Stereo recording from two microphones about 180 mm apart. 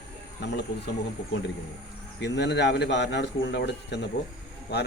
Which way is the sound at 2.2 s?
75° left (ahead or behind).